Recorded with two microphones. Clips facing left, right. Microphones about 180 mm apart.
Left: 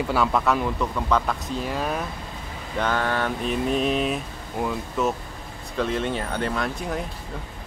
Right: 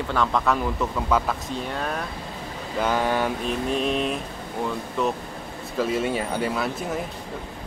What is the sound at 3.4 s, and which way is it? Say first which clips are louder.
Speech: left 1 dB; centre (ahead or behind).